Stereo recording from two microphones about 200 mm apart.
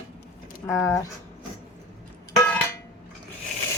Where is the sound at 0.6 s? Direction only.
10° left (ahead or behind).